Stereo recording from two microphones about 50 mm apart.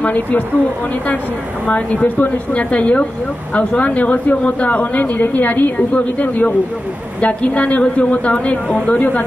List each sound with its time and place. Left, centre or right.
0.0 s a man's voice: left
1.7 s a man's voice: left